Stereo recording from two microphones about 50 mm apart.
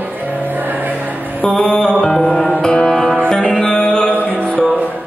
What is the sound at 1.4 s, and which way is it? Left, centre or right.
Music, centre.